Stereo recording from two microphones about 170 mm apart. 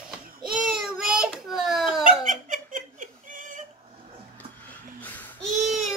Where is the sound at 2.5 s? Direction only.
50° right (ahead or behind).